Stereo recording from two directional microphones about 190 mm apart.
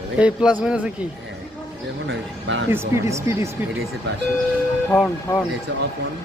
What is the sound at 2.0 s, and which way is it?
Speech, 80° right.